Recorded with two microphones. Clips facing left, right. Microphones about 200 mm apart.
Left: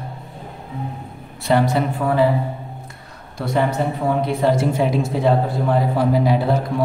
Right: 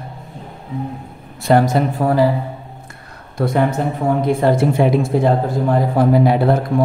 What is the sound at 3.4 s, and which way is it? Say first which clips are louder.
A man's voice: right 3 dB; 55° right (ahead or behind).